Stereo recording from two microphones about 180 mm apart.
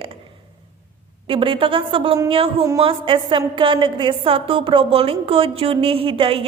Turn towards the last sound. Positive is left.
turn(degrees=-30)  # may be behind; listen again after turning